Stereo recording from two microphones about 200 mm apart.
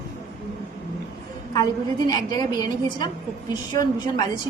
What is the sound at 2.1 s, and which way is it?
Speech, 20° left (ahead or behind).